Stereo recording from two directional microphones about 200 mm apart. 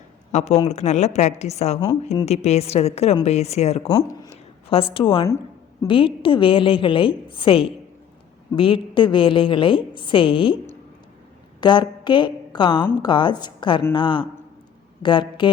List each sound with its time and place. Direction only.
0.3 s a woman's voice: 35° left (ahead or behind)
4.9 s a woman's voice: 25° left (ahead or behind)
11.6 s a woman's voice: 20° left (ahead or behind)